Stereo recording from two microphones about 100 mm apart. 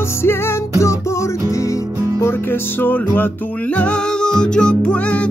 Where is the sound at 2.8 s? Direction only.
20° left (ahead or behind).